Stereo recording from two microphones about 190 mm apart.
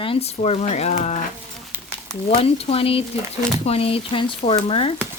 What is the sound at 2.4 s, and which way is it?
Speech, 30° left (ahead or behind).